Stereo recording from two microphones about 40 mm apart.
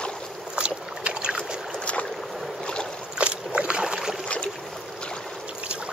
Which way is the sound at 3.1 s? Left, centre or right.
Right.